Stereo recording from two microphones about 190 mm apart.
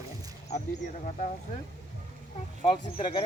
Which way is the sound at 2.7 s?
25° left (ahead or behind).